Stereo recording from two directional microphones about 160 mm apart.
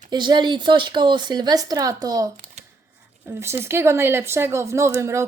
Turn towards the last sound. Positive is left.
turn(degrees=-15)  # may be behind; listen again after turning